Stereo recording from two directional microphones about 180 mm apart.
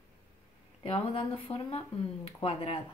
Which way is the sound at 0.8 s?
30° left (ahead or behind).